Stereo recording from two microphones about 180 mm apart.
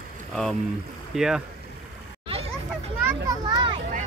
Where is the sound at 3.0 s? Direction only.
20° right (ahead or behind).